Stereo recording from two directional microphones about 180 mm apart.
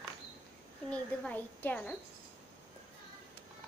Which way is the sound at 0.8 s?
5° left (ahead or behind).